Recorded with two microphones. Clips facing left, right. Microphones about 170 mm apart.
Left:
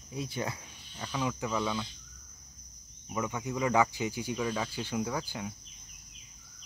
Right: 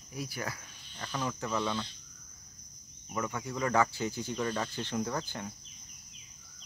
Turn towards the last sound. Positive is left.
turn(degrees=10)  # may be behind; listen again after turning